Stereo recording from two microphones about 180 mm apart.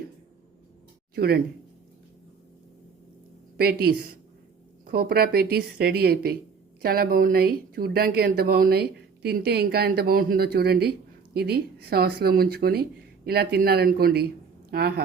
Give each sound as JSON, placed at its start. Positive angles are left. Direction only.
{"t": 1.1, "sound": "speech", "side_deg": -60}
{"t": 3.6, "sound": "speech", "side_deg": -60}